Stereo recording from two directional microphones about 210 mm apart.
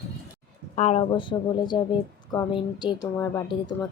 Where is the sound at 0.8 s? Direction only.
30° left (ahead or behind).